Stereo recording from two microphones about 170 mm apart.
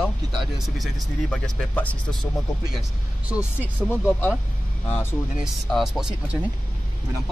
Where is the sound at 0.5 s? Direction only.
Centre (ahead or behind).